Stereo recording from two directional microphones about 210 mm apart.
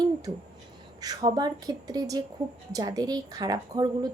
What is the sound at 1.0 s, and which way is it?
A woman's voice, 20° right (ahead or behind).